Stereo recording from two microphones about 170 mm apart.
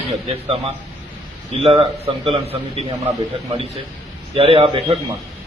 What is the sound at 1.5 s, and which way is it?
A man's voice, 35° right (ahead or behind).